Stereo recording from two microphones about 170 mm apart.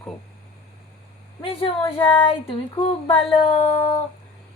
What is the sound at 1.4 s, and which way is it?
Speech, 35° left (ahead or behind).